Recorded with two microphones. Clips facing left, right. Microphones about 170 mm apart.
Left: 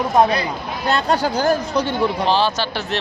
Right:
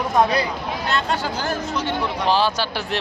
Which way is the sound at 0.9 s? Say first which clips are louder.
Left 6 dB; 40° left (ahead or behind).